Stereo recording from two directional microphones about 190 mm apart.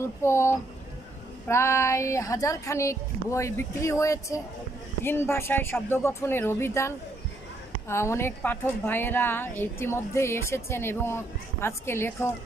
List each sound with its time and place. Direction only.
0.2 s a woman's voice: 15° left (ahead or behind)
7.9 s a woman's voice: 15° left (ahead or behind)